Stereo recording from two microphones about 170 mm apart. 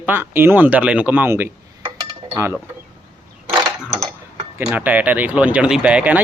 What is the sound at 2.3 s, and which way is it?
Cutlery, 15° right (ahead or behind).